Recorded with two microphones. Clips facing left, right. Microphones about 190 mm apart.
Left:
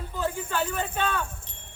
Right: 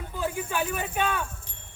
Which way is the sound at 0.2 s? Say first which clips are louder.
Even; 15° right (ahead or behind).